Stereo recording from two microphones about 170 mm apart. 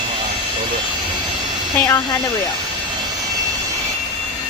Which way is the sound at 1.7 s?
15° left (ahead or behind).